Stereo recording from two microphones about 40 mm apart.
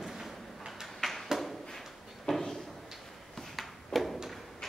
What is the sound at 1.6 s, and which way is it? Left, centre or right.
Drawer open or close, centre.